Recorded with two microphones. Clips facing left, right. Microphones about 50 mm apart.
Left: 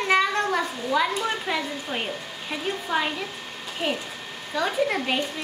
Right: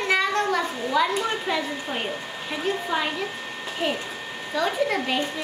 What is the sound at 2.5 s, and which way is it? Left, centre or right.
A woman's voice, centre.